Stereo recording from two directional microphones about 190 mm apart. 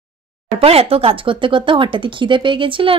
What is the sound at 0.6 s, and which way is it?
Speech, 30° right (ahead or behind).